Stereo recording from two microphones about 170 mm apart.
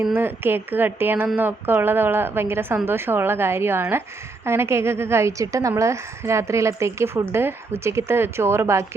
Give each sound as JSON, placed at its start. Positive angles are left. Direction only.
{"t": 0.0, "sound": "a woman's voice", "side_deg": -10}